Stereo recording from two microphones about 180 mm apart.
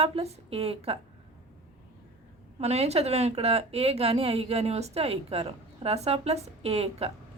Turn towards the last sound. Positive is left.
turn(degrees=-35)  # may be behind; listen again after turning